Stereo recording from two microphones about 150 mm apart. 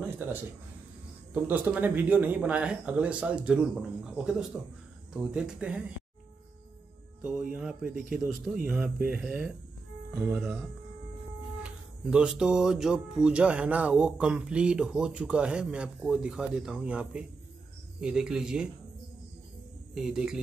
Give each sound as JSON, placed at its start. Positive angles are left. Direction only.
{"t": 1.3, "sound": "speech", "side_deg": -10}
{"t": 7.2, "sound": "speech", "side_deg": -10}
{"t": 11.6, "sound": "speech", "side_deg": -5}
{"t": 19.9, "sound": "speech", "side_deg": -5}